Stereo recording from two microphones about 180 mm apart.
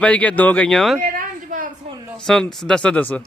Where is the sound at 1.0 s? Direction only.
50° right (ahead or behind).